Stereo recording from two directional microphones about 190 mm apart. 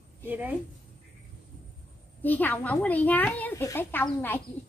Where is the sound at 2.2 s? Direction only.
10° left (ahead or behind).